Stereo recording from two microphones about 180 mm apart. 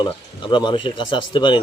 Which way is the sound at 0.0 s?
25° left (ahead or behind).